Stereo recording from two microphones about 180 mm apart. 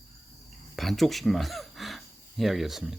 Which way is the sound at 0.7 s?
Centre (ahead or behind).